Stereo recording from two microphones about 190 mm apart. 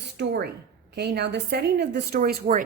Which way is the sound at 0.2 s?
60° right (ahead or behind).